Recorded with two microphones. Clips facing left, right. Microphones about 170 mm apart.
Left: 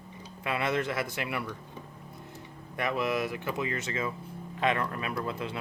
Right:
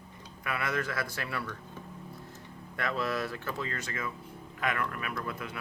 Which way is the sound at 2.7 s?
20° left (ahead or behind).